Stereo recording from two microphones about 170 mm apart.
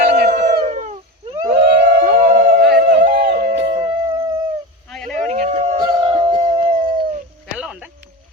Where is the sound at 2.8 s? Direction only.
60° right (ahead or behind); by 3.7 s 85° right.